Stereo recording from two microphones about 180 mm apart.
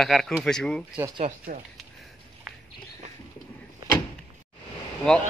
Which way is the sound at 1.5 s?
55° right (ahead or behind).